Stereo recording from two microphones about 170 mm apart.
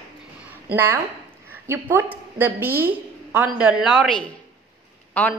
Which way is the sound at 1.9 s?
10° right (ahead or behind).